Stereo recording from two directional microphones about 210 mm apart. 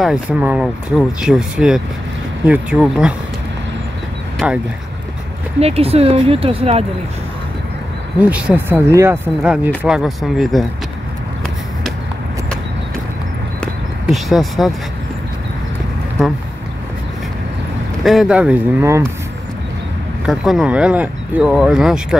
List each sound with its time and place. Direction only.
0.0 s speech: 5° right (ahead or behind)
5.6 s speech: 30° right (ahead or behind)
8.2 s speech: 5° right (ahead or behind)
13.6 s a sound: centre (ahead or behind)
18.0 s speech: centre (ahead or behind)
20.2 s speech: centre (ahead or behind)